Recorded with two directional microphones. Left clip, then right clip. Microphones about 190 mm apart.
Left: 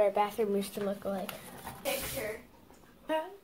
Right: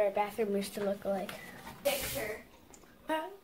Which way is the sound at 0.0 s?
15° left (ahead or behind).